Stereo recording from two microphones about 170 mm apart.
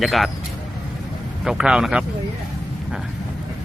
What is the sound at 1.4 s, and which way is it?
Speech, 5° right (ahead or behind).